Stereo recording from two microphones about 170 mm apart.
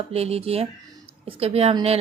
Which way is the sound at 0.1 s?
35° right (ahead or behind).